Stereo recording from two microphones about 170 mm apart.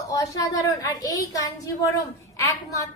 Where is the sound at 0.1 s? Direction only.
20° left (ahead or behind).